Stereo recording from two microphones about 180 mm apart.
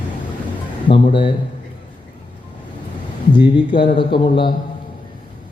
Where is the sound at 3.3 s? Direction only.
25° left (ahead or behind).